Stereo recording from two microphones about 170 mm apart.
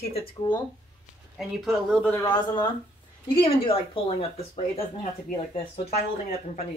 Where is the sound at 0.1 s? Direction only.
30° left (ahead or behind).